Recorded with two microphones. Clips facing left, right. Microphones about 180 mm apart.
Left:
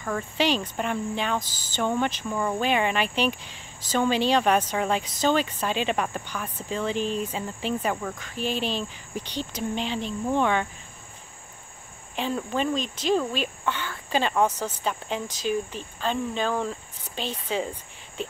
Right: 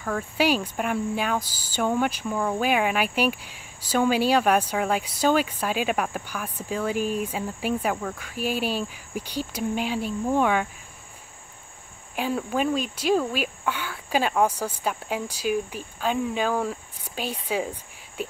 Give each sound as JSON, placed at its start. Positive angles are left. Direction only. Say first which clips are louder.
{"t": 0.0, "sound": "speech", "louder": "right 1 dB", "side_deg": -5}
{"t": 12.2, "sound": "speech", "louder": "right 2 dB", "side_deg": -10}